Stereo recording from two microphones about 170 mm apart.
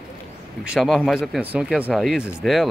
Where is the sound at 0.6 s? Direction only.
5° right (ahead or behind).